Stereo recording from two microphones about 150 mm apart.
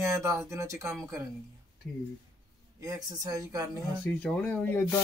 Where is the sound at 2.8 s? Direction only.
25° right (ahead or behind).